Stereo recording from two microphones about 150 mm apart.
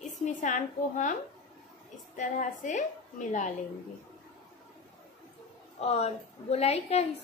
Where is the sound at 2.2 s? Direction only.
55° left (ahead or behind).